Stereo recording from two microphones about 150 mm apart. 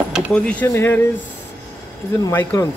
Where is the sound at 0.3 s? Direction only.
10° left (ahead or behind).